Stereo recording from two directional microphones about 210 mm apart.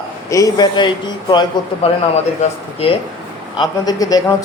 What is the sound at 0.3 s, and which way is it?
A man's voice, 15° left (ahead or behind).